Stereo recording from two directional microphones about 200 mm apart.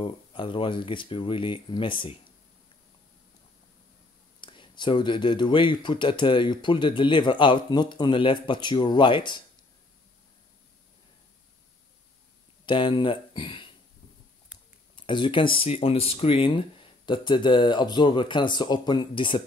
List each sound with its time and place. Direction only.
0.0 s speech: 25° left (ahead or behind)
4.4 s speech: 25° left (ahead or behind)
12.6 s speech: 25° left (ahead or behind)
15.0 s speech: 25° left (ahead or behind)